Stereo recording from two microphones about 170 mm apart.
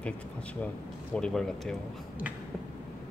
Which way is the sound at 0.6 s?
5° left (ahead or behind).